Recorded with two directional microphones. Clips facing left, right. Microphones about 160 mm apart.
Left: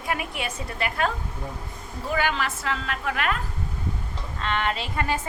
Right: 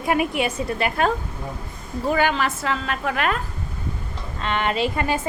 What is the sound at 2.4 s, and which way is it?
Speech, 25° right (ahead or behind).